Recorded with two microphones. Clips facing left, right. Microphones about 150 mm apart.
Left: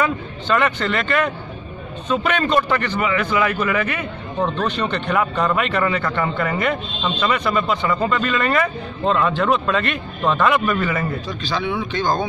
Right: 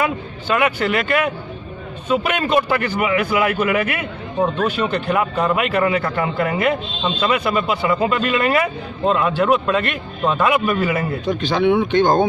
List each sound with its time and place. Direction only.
0.0 s a man's voice: 10° right (ahead or behind)
11.2 s speech: 55° right (ahead or behind)